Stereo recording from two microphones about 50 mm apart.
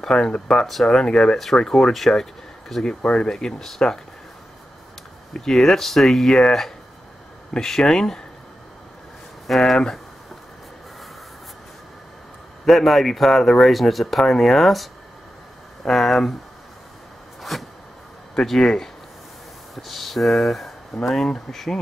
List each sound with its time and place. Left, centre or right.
0.0 s speech: centre
1.9 s speech: centre
3.0 s speech: left
5.3 s speech: centre
9.6 s speech: centre
12.6 s speech: centre
15.9 s speech: centre
17.4 s a sound: centre
18.3 s speech: centre